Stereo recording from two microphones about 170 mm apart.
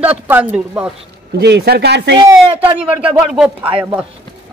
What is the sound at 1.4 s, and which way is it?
Speech, 75° right (ahead or behind).